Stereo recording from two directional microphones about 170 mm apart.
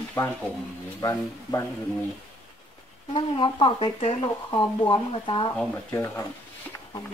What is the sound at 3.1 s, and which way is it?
Speech, 30° left (ahead or behind).